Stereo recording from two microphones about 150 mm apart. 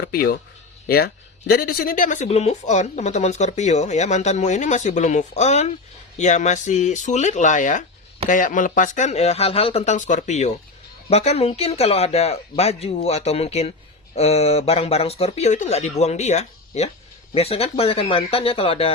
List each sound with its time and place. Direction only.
0.1 s speech: 85° left; by 18.9 s 40° left (ahead or behind)